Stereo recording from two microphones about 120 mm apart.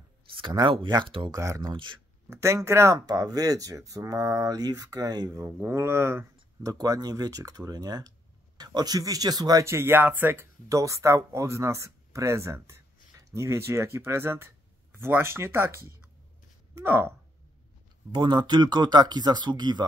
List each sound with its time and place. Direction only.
0.3 s speech: 40° right (ahead or behind)
1.3 s speech: 30° right (ahead or behind)
1.7 s speech: 40° right (ahead or behind)
2.2 s speech: 25° right (ahead or behind)
18.1 s speech: 40° right (ahead or behind)